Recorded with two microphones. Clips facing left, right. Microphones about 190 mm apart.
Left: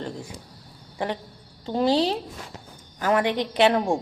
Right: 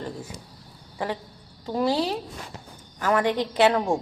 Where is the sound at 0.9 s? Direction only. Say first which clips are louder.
Left 1 dB; 25° left (ahead or behind).